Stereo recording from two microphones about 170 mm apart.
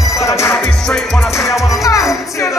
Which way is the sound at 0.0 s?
20° left (ahead or behind).